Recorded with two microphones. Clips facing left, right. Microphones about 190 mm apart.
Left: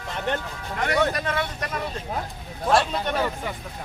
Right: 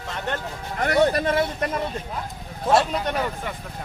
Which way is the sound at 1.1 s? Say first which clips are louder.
Right 5 dB; 30° right (ahead or behind).